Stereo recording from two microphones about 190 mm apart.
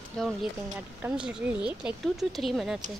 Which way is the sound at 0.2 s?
Centre (ahead or behind).